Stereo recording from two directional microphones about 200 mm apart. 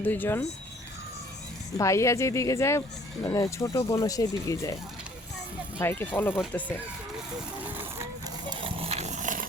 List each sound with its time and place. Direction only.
0.0 s speech: 10° left (ahead or behind)
1.8 s speech: 15° left (ahead or behind)
5.8 s speech: 10° left (ahead or behind)
8.4 s horse: 30° right (ahead or behind)